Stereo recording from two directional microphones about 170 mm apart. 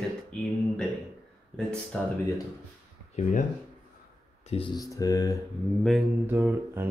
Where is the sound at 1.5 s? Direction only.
5° left (ahead or behind).